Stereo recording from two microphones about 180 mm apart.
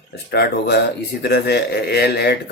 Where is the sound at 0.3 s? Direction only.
60° left (ahead or behind).